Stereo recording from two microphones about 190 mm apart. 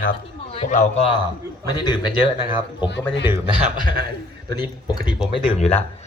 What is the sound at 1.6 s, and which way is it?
Speech, 20° left (ahead or behind).